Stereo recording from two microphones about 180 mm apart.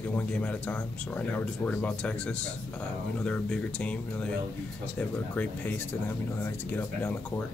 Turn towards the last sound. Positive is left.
turn(degrees=10)  # may be behind; listen again after turning